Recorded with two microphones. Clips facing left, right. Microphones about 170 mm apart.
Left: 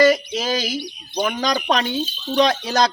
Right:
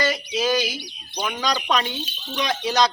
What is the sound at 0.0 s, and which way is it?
Speech, 45° left (ahead or behind).